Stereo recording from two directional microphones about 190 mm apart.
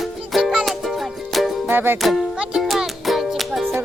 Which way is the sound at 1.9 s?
Centre (ahead or behind).